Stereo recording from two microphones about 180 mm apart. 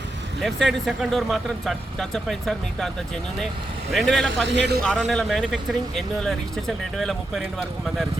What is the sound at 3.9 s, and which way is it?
Speech, centre (ahead or behind).